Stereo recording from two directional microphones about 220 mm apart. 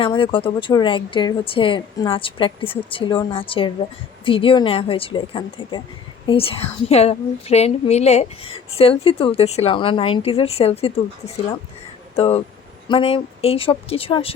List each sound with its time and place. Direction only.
0.0 s a woman's voice: 25° left (ahead or behind)
12.1 s a woman's voice: 25° left (ahead or behind)